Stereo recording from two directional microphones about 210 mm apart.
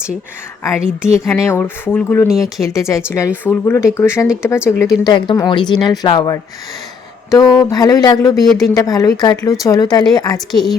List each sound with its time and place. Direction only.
0.8 s a woman's voice: 5° right (ahead or behind)
1.2 s speech: 10° left (ahead or behind)
10.5 s a woman's voice: centre (ahead or behind)